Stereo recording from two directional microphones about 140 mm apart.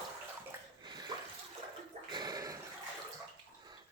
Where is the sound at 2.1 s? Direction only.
30° right (ahead or behind).